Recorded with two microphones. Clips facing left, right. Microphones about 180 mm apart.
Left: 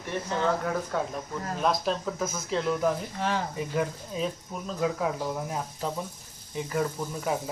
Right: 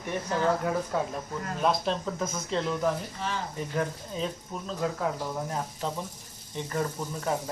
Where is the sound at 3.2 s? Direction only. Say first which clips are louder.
Left 4 dB; 50° left (ahead or behind).